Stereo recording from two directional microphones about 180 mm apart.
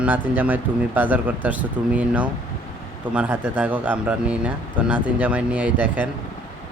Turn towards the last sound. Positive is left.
turn(degrees=-10)  # may be behind; listen again after turning